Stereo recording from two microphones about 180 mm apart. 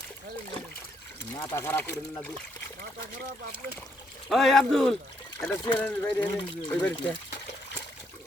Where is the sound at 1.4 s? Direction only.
15° left (ahead or behind).